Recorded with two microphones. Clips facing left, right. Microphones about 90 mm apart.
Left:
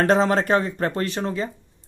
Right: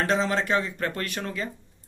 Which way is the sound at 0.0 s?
45° left (ahead or behind).